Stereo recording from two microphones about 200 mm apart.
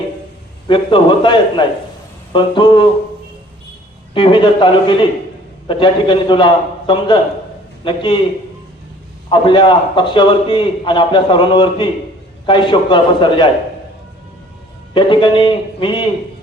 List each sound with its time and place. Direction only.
0.7 s a man's voice: 25° left (ahead or behind)
4.1 s a man's voice: 25° left (ahead or behind)
9.3 s a man's voice: 25° left (ahead or behind)
14.9 s a man's voice: 25° left (ahead or behind)